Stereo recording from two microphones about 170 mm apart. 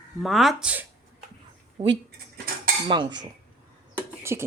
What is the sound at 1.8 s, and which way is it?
Speech, 35° right (ahead or behind).